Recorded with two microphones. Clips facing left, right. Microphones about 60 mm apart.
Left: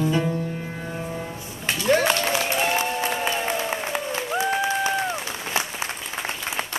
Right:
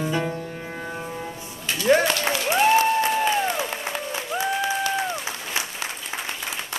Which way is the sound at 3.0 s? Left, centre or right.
Centre.